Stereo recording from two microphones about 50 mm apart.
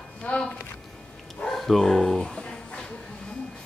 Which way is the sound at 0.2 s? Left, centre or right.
Left.